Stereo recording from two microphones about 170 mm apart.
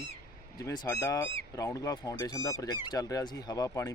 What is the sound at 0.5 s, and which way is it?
Speech, 20° left (ahead or behind).